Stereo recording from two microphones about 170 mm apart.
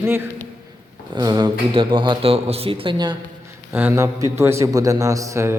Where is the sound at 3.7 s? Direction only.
15° right (ahead or behind).